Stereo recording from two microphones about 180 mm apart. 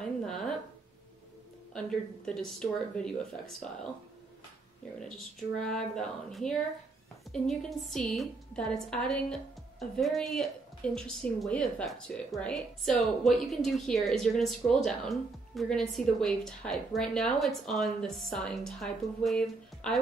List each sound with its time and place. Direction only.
0.0 s a sound: 5° left (ahead or behind)
1.7 s a woman's voice: 5° left (ahead or behind)
5.0 s a woman's voice: 5° left (ahead or behind)